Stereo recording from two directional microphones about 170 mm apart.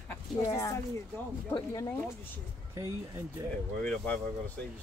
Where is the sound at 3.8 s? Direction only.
10° left (ahead or behind).